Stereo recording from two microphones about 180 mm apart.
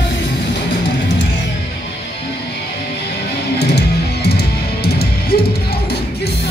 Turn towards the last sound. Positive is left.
turn(degrees=60)  # may be behind; listen again after turning